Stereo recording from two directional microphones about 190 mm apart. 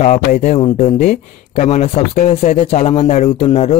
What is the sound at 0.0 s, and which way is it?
Speech, 40° left (ahead or behind).